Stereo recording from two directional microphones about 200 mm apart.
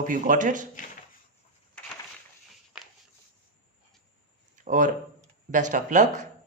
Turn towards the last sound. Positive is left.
turn(degrees=-35)  # may be behind; listen again after turning